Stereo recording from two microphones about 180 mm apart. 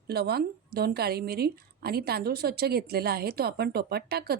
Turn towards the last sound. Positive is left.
turn(degrees=-60)  # may be behind; listen again after turning